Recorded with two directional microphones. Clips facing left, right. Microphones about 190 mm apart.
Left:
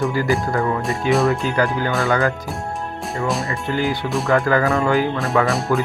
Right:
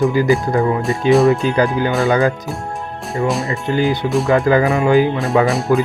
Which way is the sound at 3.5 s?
20° right (ahead or behind).